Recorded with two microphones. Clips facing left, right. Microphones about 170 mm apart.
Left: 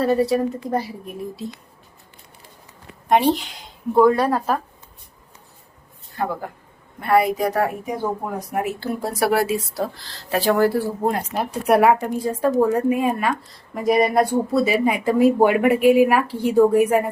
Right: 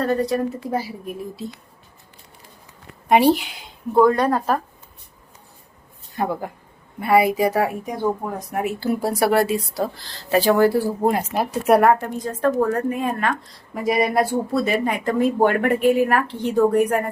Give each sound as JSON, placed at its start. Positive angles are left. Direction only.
{"t": 0.0, "sound": "speech", "side_deg": 5}
{"t": 3.1, "sound": "a woman's voice", "side_deg": -5}
{"t": 4.0, "sound": "speech", "side_deg": 5}
{"t": 6.2, "sound": "speech", "side_deg": -15}
{"t": 7.0, "sound": "speech", "side_deg": -5}